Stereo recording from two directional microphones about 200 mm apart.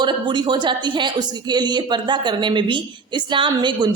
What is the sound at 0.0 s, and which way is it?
Speech, 20° right (ahead or behind).